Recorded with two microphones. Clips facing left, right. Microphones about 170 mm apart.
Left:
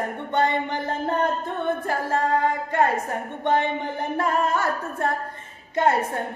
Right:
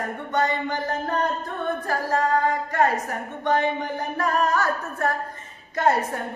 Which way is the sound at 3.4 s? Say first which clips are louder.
Even; 25° left (ahead or behind).